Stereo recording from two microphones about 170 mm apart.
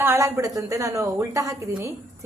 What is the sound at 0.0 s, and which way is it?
Speech, 15° right (ahead or behind).